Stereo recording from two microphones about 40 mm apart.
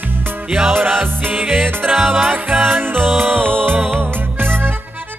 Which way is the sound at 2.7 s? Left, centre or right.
Right.